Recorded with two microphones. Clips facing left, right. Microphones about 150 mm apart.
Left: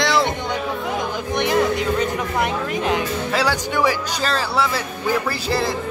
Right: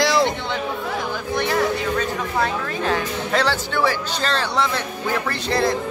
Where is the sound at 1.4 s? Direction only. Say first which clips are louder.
Left 2 dB; 15° left (ahead or behind).